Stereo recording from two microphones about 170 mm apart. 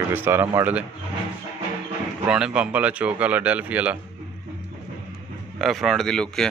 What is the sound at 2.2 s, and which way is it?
Speech, 5° right (ahead or behind).